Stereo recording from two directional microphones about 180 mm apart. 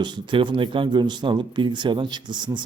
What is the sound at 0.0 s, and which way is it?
A man's voice, 25° right (ahead or behind).